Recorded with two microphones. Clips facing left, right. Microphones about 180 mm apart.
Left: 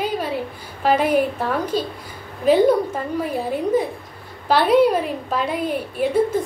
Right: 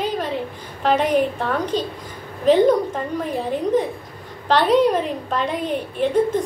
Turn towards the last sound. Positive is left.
turn(degrees=5)  # may be behind; listen again after turning